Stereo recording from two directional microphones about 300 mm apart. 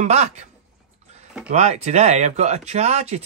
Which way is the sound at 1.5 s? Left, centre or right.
Right.